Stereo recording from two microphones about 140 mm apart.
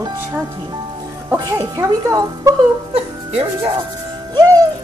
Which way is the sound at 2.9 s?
45° right (ahead or behind).